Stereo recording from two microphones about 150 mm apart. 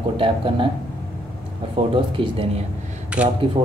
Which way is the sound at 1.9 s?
35° right (ahead or behind).